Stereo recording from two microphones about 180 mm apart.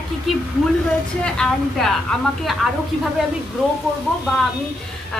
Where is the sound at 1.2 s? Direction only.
5° left (ahead or behind).